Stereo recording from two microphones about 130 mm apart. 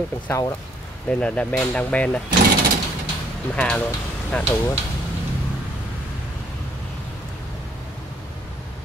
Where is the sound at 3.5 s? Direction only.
10° left (ahead or behind).